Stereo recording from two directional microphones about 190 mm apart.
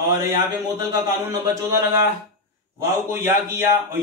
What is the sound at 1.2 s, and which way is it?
Speech, 10° right (ahead or behind).